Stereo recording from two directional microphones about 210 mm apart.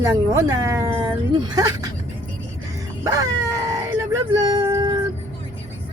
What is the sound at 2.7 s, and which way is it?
Music, 15° right (ahead or behind).